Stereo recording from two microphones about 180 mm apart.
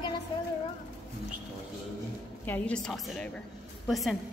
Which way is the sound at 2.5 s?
5° left (ahead or behind).